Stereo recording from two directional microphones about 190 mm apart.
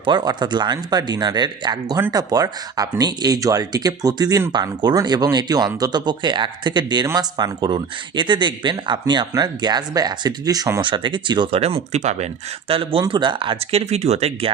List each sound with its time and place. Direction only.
0.0 s speech: 20° right (ahead or behind)